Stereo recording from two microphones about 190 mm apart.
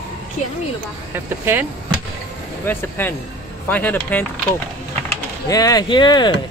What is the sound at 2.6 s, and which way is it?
Speech, 10° left (ahead or behind).